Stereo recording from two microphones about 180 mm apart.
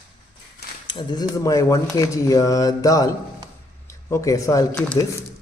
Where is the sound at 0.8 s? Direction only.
25° left (ahead or behind).